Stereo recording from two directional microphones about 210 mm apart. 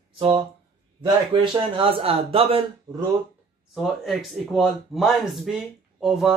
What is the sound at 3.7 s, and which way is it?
Speech, centre (ahead or behind).